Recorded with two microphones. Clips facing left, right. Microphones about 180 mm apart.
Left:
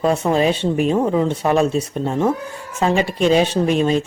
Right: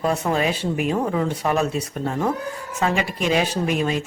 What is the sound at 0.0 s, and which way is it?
Speech, 25° left (ahead or behind).